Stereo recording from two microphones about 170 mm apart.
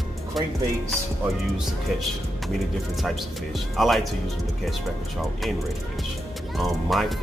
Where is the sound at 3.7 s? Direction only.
Centre (ahead or behind).